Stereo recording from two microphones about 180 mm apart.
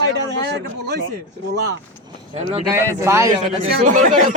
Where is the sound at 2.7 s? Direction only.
15° right (ahead or behind).